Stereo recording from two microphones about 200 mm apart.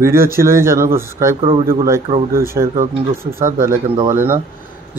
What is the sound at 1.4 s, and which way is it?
Speech, 25° right (ahead or behind).